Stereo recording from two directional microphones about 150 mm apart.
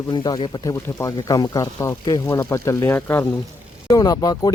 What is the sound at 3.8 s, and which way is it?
Speech, 25° left (ahead or behind).